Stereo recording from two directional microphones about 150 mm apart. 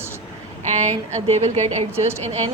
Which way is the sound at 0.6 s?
50° right (ahead or behind).